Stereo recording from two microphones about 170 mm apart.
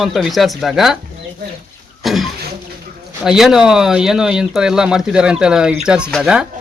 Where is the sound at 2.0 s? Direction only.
Centre (ahead or behind).